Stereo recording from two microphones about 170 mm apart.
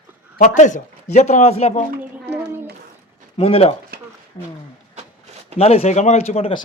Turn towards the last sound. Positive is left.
turn(degrees=35)  # may be behind; listen again after turning